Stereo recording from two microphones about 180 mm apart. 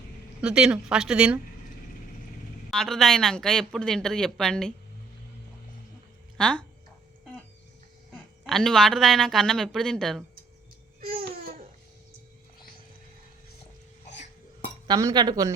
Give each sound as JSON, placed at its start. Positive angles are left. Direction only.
{"t": 0.4, "sound": "speech", "side_deg": -5}
{"t": 2.6, "sound": "speech", "side_deg": 0}
{"t": 6.3, "sound": "speech", "side_deg": 5}
{"t": 8.1, "sound": "a woman's voice", "side_deg": 0}
{"t": 11.1, "sound": "babbling", "side_deg": -55}
{"t": 14.8, "sound": "speech", "side_deg": -20}